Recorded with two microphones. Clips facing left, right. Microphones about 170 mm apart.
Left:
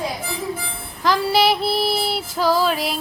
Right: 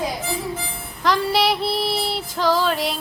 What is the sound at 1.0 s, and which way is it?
Child singing, centre (ahead or behind).